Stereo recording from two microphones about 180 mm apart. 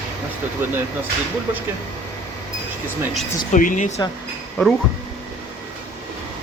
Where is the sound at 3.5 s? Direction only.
45° left (ahead or behind).